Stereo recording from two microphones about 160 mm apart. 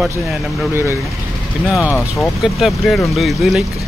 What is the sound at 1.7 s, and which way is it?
Speech, 20° left (ahead or behind).